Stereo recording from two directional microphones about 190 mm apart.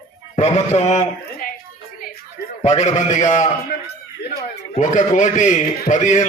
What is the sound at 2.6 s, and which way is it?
Speech, 35° left (ahead or behind).